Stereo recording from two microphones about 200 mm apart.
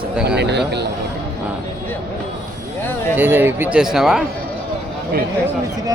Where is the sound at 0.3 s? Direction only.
60° right (ahead or behind).